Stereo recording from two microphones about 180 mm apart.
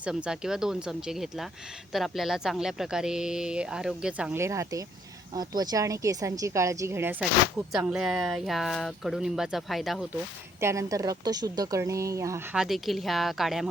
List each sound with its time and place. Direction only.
0.0 s a woman's voice: 5° right (ahead or behind)
10.6 s a woman's voice: 15° right (ahead or behind)
12.5 s speech: centre (ahead or behind)